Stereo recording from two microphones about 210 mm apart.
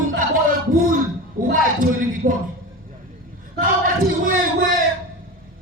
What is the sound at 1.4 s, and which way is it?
Speech, 40° right (ahead or behind).